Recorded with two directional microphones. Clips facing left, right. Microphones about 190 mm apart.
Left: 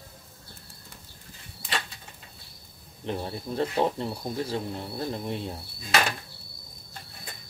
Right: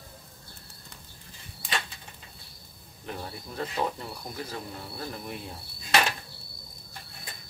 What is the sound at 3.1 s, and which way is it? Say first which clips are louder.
Speech: left 7 dB; 30° left (ahead or behind).